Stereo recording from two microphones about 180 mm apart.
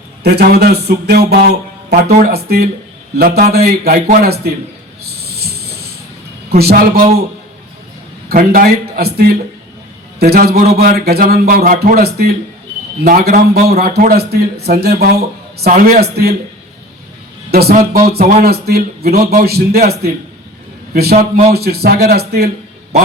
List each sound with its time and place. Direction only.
0.2 s speech: 60° right (ahead or behind)
5.2 s a sound: 60° right (ahead or behind)
6.6 s speech: 60° right (ahead or behind)
8.3 s speech: 55° right (ahead or behind)
13.1 s speech: 50° right (ahead or behind)
17.5 s speech: 60° right (ahead or behind)
18.2 s speech: 35° right (ahead or behind)
18.4 s speech: 60° right (ahead or behind)